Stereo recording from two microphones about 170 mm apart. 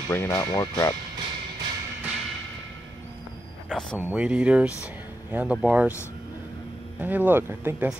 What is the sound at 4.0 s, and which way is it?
Speech, 5° right (ahead or behind).